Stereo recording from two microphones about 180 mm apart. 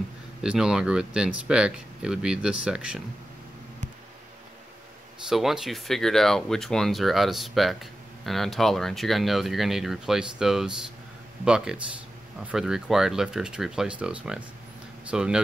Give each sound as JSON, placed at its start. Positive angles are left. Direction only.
{"t": 0.4, "sound": "speech", "side_deg": -5}
{"t": 5.3, "sound": "speech", "side_deg": 0}